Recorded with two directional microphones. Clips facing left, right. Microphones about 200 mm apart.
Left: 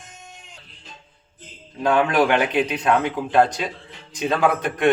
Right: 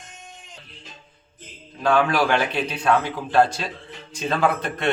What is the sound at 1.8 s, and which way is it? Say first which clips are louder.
A man's voice: left 2 dB; 20° left (ahead or behind).